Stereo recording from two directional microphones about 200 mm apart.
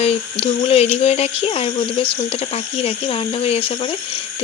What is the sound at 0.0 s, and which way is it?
Speech, 30° left (ahead or behind).